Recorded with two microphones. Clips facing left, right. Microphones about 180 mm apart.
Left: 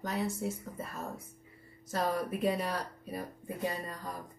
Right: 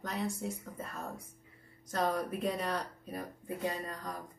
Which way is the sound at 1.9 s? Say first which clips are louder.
Even; 5° left (ahead or behind).